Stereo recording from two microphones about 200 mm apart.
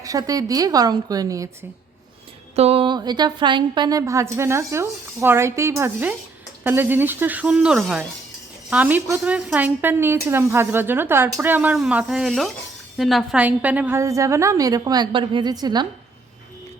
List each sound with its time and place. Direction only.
0.0 s a woman's voice: 15° right (ahead or behind)
2.6 s a woman's voice: 30° right (ahead or behind)